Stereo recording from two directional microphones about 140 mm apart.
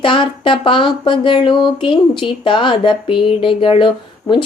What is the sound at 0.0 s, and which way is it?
Speech, 35° left (ahead or behind).